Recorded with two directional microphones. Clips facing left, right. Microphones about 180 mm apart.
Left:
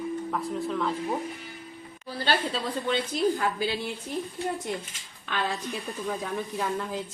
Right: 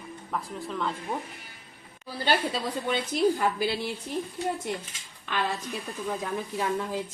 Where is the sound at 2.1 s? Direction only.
10° right (ahead or behind).